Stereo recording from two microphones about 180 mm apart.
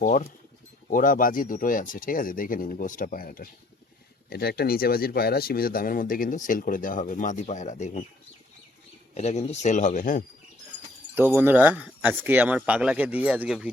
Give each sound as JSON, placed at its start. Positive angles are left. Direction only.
{"t": 0.0, "sound": "speech", "side_deg": 45}
{"t": 9.1, "sound": "speech", "side_deg": 40}
{"t": 11.1, "sound": "speech", "side_deg": -10}